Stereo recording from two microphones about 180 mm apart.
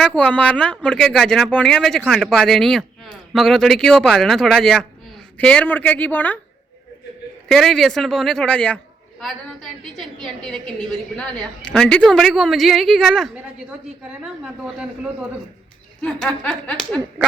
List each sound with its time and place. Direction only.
0.0 s speech: 5° left (ahead or behind)
7.4 s speech: centre (ahead or behind)
16.2 s speech: 5° left (ahead or behind)